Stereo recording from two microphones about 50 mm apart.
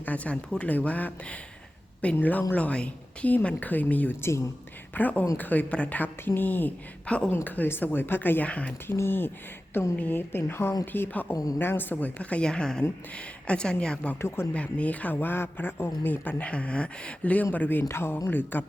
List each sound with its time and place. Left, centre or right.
0.0 s a man's voice: left
3.4 s a man's voice: left
4.2 s speech: left
4.9 s a man's voice: left
7.0 s a woman's voice: left
7.4 s a man's voice: left
8.4 s speech: left
8.9 s a man's voice: left
12.5 s speech: centre
14.2 s speech: left
14.5 s a man's voice: left
16.4 s speech: left
17.8 s speech: left
18.3 s a man's voice: left